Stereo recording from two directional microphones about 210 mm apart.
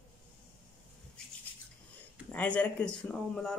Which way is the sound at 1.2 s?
5° left (ahead or behind).